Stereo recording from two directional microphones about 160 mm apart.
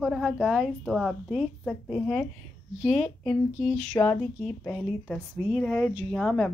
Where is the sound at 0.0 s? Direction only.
Centre (ahead or behind).